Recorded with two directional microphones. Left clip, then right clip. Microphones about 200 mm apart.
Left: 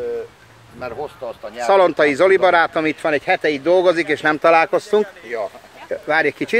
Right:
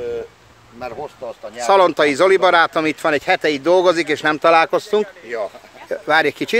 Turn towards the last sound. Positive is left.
turn(degrees=-10)  # may be behind; listen again after turning